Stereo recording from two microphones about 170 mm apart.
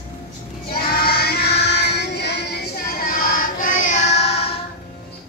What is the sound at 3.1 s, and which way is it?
Child singing, 60° left (ahead or behind).